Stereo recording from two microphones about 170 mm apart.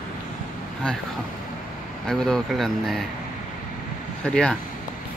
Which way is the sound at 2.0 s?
5° left (ahead or behind).